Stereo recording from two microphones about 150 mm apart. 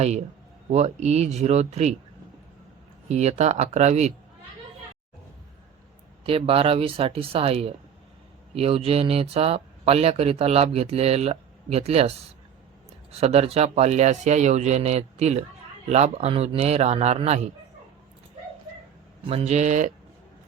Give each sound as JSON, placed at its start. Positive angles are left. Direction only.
{"t": 0.7, "sound": "speech", "side_deg": -45}
{"t": 3.1, "sound": "speech", "side_deg": -50}
{"t": 6.2, "sound": "speech", "side_deg": -40}
{"t": 19.2, "sound": "speech", "side_deg": -40}